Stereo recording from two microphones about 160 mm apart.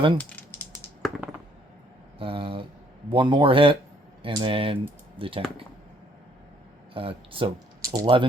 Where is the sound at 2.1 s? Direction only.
35° right (ahead or behind).